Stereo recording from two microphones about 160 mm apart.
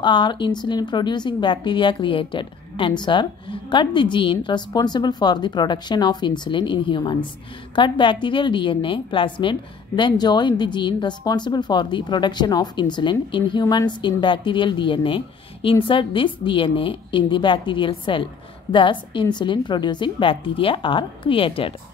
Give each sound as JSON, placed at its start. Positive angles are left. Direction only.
{"t": 0.0, "sound": "a woman's voice", "side_deg": 30}